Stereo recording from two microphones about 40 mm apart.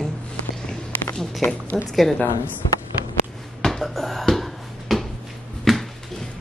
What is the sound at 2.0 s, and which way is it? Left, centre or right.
Speech, centre.